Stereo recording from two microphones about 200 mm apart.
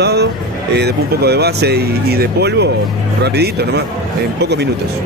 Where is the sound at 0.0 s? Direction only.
55° right (ahead or behind).